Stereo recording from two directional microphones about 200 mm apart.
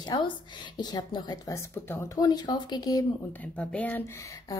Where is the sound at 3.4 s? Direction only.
5° left (ahead or behind).